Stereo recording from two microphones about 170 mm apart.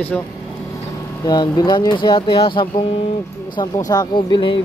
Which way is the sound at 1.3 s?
25° left (ahead or behind).